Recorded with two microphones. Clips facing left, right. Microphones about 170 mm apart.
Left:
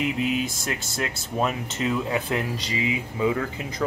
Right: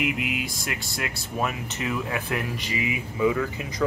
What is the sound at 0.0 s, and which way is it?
Speech, 30° left (ahead or behind).